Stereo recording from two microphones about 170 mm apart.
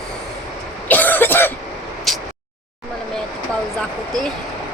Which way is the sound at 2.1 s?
Centre (ahead or behind).